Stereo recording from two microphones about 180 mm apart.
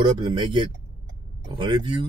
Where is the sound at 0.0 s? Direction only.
25° right (ahead or behind).